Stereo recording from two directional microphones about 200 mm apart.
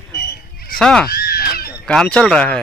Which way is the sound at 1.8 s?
5° left (ahead or behind).